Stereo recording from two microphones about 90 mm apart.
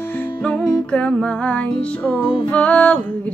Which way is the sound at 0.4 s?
10° left (ahead or behind).